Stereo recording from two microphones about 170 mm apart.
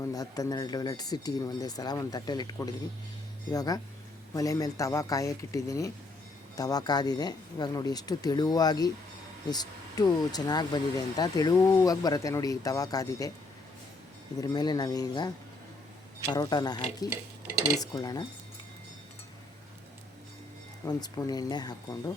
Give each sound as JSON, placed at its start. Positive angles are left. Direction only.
{"t": 0.0, "sound": "speech", "side_deg": 20}
{"t": 14.3, "sound": "speech", "side_deg": 25}
{"t": 20.8, "sound": "speech", "side_deg": 25}